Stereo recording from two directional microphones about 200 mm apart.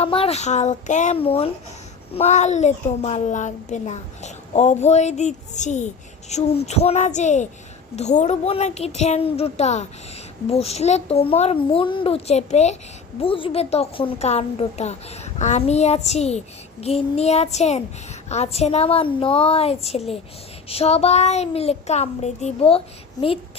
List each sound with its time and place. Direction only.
0.0 s speech: 30° left (ahead or behind)